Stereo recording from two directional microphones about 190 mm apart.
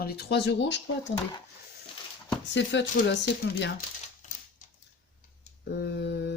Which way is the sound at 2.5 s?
70° left (ahead or behind).